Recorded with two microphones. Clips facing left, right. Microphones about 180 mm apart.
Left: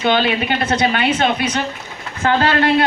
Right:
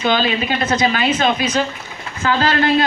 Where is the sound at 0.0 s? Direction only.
60° left (ahead or behind).